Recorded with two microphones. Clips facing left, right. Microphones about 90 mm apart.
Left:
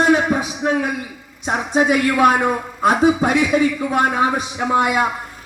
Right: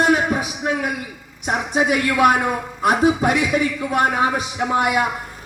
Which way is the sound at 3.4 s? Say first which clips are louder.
Left 3 dB; 35° left (ahead or behind).